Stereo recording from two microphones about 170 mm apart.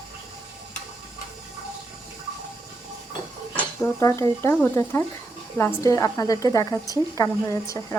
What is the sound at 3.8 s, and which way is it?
A woman's voice, 15° left (ahead or behind).